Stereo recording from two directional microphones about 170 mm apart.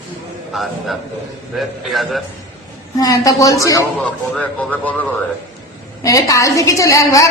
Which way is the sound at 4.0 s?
5° left (ahead or behind).